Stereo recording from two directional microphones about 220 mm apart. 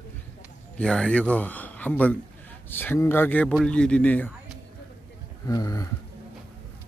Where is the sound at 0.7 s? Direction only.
5° left (ahead or behind).